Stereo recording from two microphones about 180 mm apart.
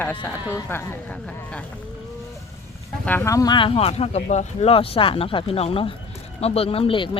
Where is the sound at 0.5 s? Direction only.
15° left (ahead or behind).